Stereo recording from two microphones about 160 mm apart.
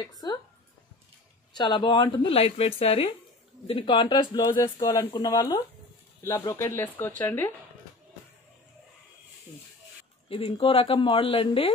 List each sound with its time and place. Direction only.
0.2 s speech: 25° left (ahead or behind)
1.5 s speech: 30° left (ahead or behind)
10.3 s speech: 35° left (ahead or behind)